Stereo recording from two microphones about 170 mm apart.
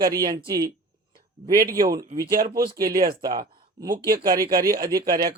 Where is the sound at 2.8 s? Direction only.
60° right (ahead or behind).